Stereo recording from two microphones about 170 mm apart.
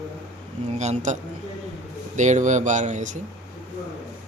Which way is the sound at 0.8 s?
45° right (ahead or behind).